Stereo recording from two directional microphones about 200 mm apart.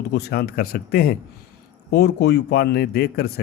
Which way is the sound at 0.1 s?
55° left (ahead or behind).